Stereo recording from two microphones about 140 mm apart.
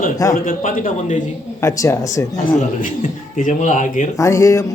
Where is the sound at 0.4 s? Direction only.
75° left (ahead or behind).